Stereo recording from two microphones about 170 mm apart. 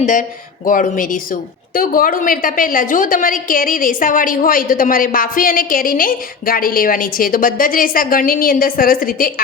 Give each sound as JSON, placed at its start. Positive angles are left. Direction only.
{"t": 0.0, "sound": "a woman's voice", "side_deg": 50}